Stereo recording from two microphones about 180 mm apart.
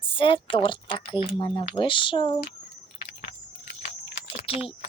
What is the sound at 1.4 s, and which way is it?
Speech, 25° left (ahead or behind).